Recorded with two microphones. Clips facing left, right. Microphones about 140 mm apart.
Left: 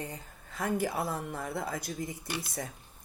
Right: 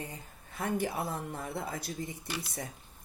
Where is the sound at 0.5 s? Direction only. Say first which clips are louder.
Left 2 dB; 20° right (ahead or behind).